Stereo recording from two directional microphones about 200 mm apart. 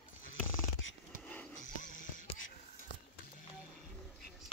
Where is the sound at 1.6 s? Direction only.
40° left (ahead or behind).